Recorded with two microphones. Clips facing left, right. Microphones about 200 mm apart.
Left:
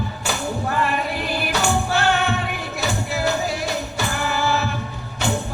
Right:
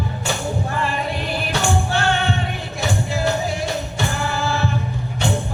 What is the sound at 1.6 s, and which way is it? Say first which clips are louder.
Music: even; 30° right (ahead or behind).